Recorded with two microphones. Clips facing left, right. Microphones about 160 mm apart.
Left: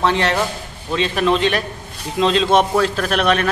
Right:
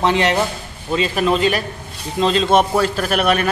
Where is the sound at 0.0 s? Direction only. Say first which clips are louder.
Right 1 dB; 15° right (ahead or behind).